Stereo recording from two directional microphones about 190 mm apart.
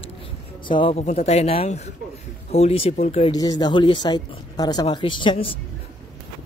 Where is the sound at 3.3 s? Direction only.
20° left (ahead or behind).